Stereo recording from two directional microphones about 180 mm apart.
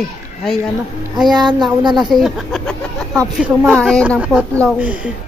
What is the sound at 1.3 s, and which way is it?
Speech, 25° right (ahead or behind).